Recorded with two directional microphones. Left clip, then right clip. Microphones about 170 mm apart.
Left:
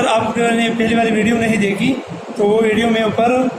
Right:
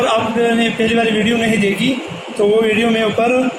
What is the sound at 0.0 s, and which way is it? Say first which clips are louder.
A man's voice: even; 30° right (ahead or behind).